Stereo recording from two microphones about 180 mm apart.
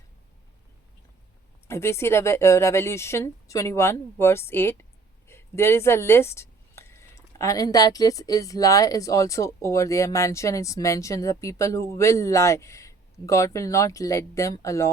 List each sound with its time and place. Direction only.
1.6 s speech: 15° left (ahead or behind)